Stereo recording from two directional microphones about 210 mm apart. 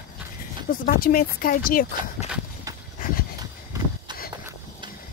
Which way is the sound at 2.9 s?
40° left (ahead or behind).